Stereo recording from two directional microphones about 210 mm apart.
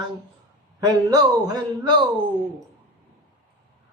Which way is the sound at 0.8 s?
20° right (ahead or behind).